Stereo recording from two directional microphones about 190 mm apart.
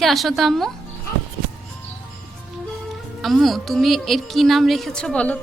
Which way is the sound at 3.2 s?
Centre (ahead or behind).